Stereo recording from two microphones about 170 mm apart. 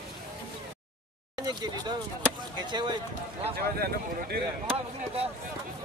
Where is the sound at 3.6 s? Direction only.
65° right (ahead or behind).